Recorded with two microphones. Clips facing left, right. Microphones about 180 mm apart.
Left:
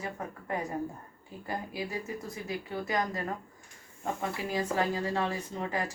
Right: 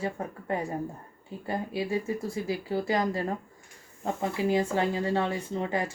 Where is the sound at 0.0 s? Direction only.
30° right (ahead or behind).